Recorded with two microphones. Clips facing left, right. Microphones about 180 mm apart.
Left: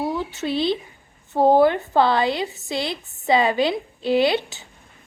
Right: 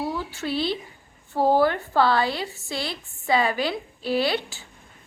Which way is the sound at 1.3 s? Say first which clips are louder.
Left 4 dB; 20° left (ahead or behind).